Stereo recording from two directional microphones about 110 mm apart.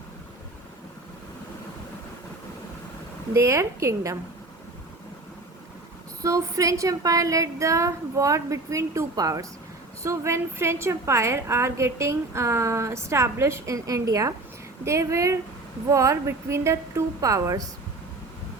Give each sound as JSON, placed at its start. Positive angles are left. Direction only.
{"t": 3.3, "sound": "a woman's voice", "side_deg": -25}
{"t": 6.2, "sound": "a woman's voice", "side_deg": -30}